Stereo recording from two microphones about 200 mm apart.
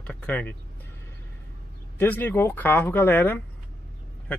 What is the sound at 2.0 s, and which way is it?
Speech, 10° left (ahead or behind).